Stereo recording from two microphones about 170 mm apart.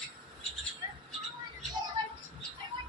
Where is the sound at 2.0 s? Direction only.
30° right (ahead or behind).